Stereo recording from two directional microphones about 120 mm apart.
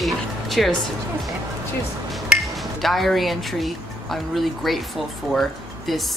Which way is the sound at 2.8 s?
Centre (ahead or behind).